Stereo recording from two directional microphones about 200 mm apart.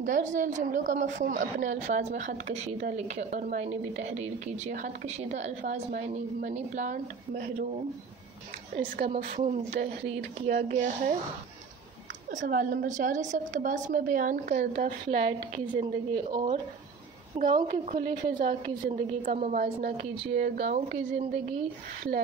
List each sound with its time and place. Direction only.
0.0 s a woman's voice: 40° right (ahead or behind)
8.7 s a woman's voice: 35° right (ahead or behind)
12.3 s a woman's voice: 40° right (ahead or behind)
17.4 s a woman's voice: 45° right (ahead or behind)